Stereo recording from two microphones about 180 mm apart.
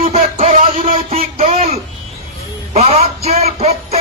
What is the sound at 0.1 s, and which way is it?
Music, 35° right (ahead or behind).